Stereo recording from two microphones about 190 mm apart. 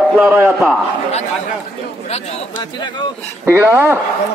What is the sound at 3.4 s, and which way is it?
Speech, 10° right (ahead or behind).